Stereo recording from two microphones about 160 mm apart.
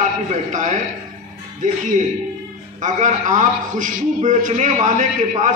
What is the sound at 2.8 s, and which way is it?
A man's voice, 50° right (ahead or behind).